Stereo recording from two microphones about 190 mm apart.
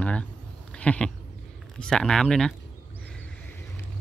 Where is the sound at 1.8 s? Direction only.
5° left (ahead or behind).